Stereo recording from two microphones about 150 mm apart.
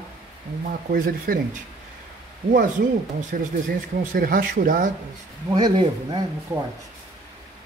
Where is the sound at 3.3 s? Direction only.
75° right (ahead or behind).